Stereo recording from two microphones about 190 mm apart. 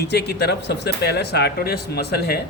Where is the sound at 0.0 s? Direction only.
60° left (ahead or behind).